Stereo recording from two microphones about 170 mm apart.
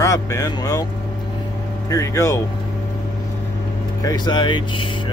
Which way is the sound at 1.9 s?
15° left (ahead or behind).